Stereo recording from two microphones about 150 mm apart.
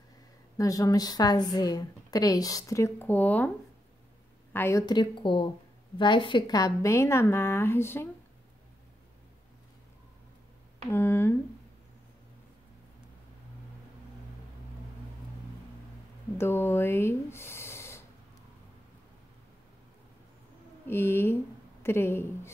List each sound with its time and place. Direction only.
0.6 s a woman's voice: 25° left (ahead or behind)
4.8 s a woman's voice: 30° left (ahead or behind); by 8.1 s 15° left (ahead or behind)
10.9 s a woman's voice: 15° left (ahead or behind)
16.3 s speech: 15° left (ahead or behind)
20.8 s a woman's voice: 15° left (ahead or behind)